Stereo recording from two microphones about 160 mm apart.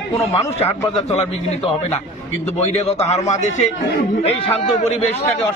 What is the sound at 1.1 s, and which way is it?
A man's voice, 45° left (ahead or behind).